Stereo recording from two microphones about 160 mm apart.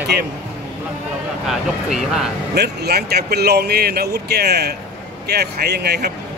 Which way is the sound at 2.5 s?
90° right.